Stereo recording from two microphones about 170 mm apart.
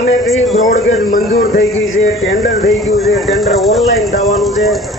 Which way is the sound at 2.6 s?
Centre (ahead or behind).